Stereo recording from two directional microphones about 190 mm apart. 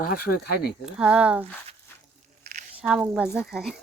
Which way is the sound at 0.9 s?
5° right (ahead or behind).